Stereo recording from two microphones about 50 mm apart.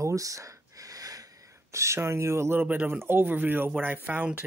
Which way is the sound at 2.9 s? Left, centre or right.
Right.